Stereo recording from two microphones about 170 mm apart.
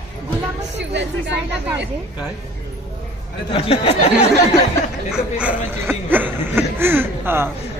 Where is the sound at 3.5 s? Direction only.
35° left (ahead or behind).